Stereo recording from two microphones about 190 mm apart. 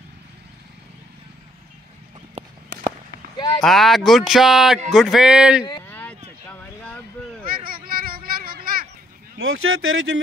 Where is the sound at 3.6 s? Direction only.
Centre (ahead or behind).